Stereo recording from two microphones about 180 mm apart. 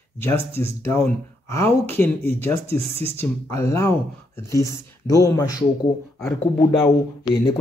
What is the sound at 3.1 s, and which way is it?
Speech, 15° left (ahead or behind).